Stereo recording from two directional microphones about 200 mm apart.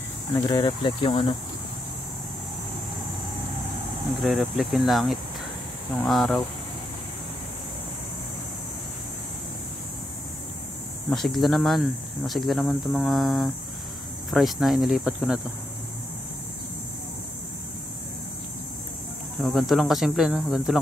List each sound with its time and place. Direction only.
0.3 s speech: 20° left (ahead or behind)
4.2 s speech: centre (ahead or behind)
11.1 s speech: centre (ahead or behind)
19.4 s speech: centre (ahead or behind)